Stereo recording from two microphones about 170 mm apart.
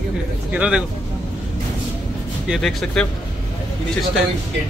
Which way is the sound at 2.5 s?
Centre (ahead or behind).